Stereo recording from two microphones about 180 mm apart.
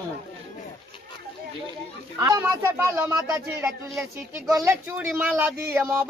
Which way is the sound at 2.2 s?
20° right (ahead or behind).